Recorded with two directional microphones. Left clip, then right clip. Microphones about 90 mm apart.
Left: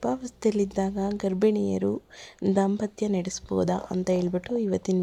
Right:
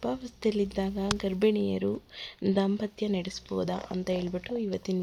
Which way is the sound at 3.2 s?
70° left (ahead or behind).